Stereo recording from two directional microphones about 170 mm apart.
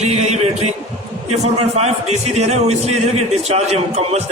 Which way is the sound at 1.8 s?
40° right (ahead or behind).